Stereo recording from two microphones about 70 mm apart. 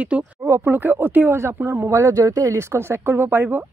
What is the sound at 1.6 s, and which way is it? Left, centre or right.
Speech, right.